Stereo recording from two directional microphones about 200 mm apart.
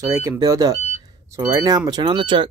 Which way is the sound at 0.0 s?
15° right (ahead or behind).